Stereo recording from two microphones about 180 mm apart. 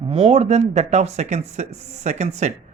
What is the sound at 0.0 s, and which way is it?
A man's voice, 30° right (ahead or behind).